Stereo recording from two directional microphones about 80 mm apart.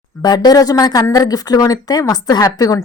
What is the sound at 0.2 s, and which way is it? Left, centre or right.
Speech, left.